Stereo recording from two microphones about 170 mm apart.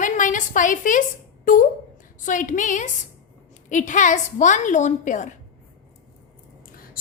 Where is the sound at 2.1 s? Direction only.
50° left (ahead or behind).